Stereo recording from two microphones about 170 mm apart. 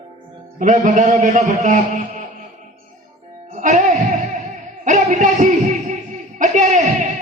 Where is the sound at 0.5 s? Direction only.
45° right (ahead or behind).